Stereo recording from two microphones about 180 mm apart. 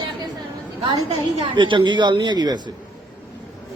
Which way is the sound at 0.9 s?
25° right (ahead or behind).